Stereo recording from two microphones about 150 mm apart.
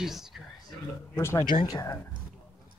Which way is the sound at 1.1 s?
20° left (ahead or behind).